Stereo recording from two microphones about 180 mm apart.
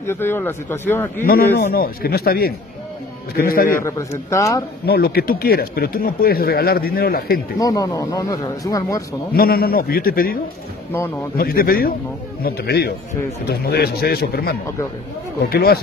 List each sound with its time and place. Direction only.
0.0 s speech: 15° left (ahead or behind)
1.6 s speech: 55° left (ahead or behind)
4.3 s speech: 15° left (ahead or behind)
4.8 s speech: 60° left (ahead or behind)
7.5 s speech: 20° left (ahead or behind)
9.3 s speech: 55° left (ahead or behind)